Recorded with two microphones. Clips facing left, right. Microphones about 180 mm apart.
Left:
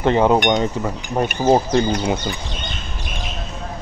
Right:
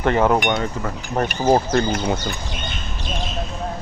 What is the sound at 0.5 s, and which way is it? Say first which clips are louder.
Chink: left 4 dB; 15° left (ahead or behind).